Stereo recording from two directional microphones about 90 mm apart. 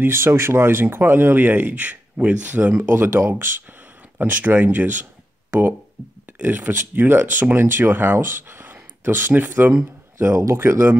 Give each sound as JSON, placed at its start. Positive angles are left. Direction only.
{"t": 0.0, "sound": "speech", "side_deg": -25}